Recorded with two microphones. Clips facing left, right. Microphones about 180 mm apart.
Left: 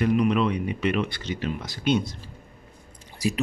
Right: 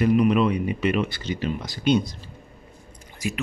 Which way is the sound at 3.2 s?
35° left (ahead or behind).